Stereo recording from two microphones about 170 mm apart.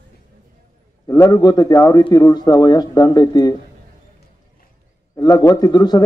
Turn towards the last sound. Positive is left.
turn(degrees=25)  # may be behind; listen again after turning